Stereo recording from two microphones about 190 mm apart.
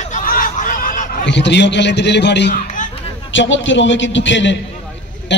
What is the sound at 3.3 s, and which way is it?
A man's voice, 75° left (ahead or behind).